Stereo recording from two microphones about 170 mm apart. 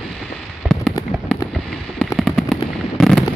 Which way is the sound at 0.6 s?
5° right (ahead or behind).